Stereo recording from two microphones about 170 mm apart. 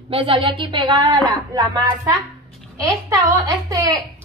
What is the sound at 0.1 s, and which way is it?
A woman's voice, 30° right (ahead or behind).